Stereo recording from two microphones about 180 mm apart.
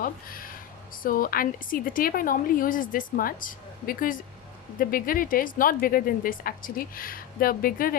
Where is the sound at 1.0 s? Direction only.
50° left (ahead or behind).